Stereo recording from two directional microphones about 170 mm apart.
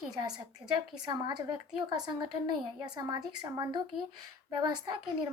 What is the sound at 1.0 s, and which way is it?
A woman's voice, 25° right (ahead or behind).